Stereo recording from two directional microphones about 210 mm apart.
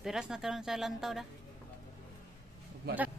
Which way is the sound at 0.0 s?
Centre (ahead or behind).